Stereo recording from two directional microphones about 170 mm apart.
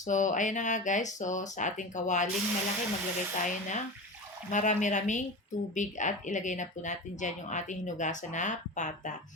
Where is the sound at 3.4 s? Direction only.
45° left (ahead or behind).